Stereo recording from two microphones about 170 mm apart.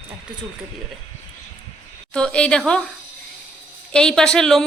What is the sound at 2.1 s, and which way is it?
Speech, 5° left (ahead or behind).